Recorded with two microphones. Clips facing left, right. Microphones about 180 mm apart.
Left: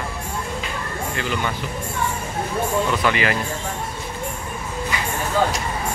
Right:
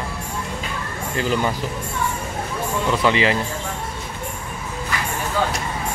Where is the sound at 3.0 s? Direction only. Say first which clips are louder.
Right 2 dB; 25° right (ahead or behind).